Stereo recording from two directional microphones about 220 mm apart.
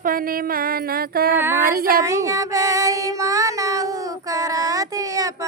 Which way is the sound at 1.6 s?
40° right (ahead or behind).